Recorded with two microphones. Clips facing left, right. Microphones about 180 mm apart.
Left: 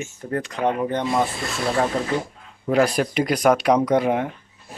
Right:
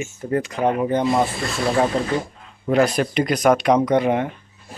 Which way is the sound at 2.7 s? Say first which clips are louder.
Right 1 dB; 10° left (ahead or behind).